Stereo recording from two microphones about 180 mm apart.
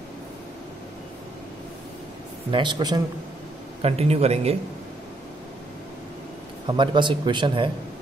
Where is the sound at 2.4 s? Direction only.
25° right (ahead or behind).